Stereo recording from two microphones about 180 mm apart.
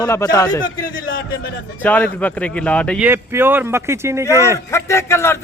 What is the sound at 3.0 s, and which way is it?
Speech, 10° right (ahead or behind).